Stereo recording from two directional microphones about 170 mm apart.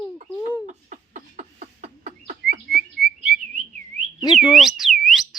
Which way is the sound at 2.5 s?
60° right (ahead or behind).